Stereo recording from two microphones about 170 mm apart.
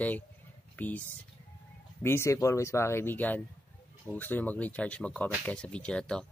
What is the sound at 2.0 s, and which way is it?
Speech, 15° left (ahead or behind).